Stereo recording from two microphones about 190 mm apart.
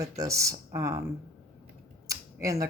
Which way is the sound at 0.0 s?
15° right (ahead or behind).